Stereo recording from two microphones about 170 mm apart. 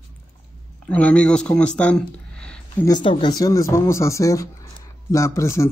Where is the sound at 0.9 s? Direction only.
5° left (ahead or behind).